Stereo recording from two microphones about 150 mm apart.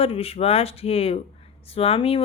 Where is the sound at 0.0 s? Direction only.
40° left (ahead or behind).